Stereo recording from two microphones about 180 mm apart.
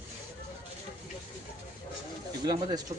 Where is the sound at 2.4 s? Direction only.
20° right (ahead or behind).